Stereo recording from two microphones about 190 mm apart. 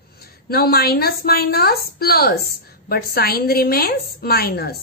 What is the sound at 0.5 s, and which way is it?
A woman's voice, 55° left (ahead or behind).